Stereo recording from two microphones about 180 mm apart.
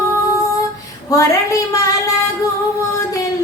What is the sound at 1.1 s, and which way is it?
A woman's voice, 20° left (ahead or behind).